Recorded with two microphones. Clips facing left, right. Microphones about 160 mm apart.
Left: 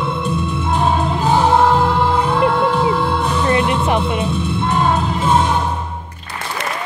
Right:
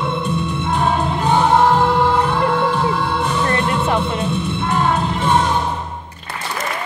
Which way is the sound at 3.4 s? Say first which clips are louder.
Left 4 dB; 20° left (ahead or behind).